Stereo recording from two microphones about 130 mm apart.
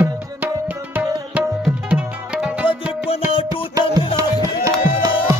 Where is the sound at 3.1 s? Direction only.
50° left (ahead or behind).